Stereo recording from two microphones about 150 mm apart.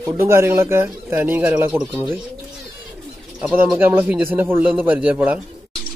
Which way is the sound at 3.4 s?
10° right (ahead or behind).